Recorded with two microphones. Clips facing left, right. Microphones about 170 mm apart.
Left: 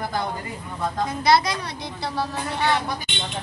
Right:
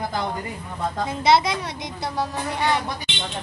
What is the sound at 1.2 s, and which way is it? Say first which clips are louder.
A woman's voice: right 1 dB; 25° right (ahead or behind).